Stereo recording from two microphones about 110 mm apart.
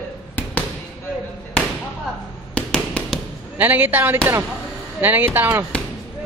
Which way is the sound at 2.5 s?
10° left (ahead or behind).